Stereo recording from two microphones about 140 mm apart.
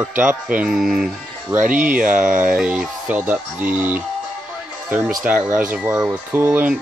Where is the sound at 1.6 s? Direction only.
70° right (ahead or behind).